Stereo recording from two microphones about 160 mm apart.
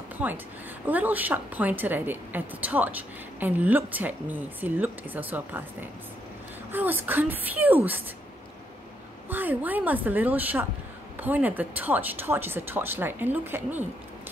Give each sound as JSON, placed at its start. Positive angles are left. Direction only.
{"t": 0.2, "sound": "a woman's voice", "side_deg": -10}
{"t": 9.3, "sound": "a woman's voice", "side_deg": -10}